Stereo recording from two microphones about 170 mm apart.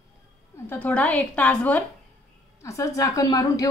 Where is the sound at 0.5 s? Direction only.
10° left (ahead or behind).